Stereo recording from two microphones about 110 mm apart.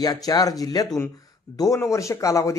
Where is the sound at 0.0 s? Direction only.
35° left (ahead or behind).